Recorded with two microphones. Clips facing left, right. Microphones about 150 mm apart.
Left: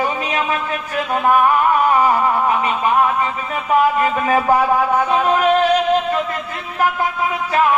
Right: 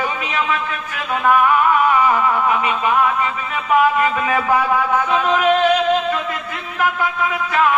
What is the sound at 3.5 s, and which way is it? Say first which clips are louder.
A man's voice: even; 35° left (ahead or behind).